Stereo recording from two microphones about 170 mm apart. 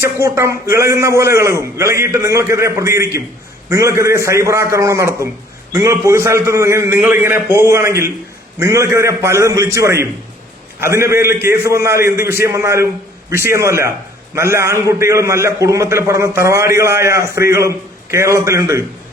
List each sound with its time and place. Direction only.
0.0 s a man's voice: 15° right (ahead or behind)